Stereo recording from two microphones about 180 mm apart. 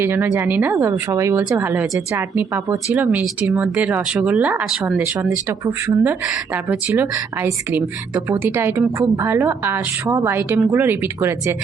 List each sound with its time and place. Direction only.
0.0 s speech: 10° right (ahead or behind)